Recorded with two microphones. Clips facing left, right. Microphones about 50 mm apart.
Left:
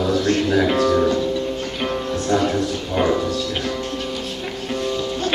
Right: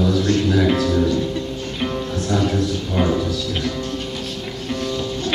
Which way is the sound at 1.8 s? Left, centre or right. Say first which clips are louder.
Right 1 dB; centre.